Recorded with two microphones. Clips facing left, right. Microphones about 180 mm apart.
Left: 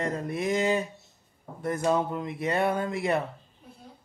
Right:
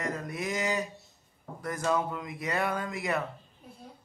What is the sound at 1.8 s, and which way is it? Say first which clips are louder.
Speech: left 3 dB; 30° left (ahead or behind).